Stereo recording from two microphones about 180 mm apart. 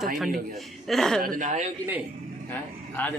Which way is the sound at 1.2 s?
45° right (ahead or behind).